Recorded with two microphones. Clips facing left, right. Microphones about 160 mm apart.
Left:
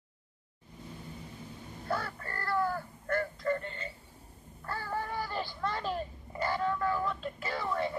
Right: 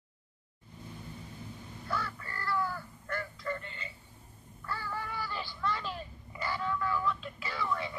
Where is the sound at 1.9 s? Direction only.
55° left (ahead or behind).